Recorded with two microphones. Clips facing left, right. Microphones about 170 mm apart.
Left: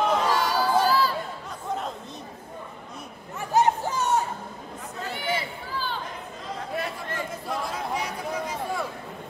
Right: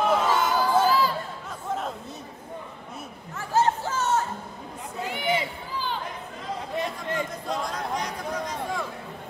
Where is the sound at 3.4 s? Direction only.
15° left (ahead or behind).